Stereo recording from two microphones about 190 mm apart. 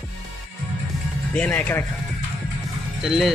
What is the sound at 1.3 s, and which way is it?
Speech, 5° left (ahead or behind).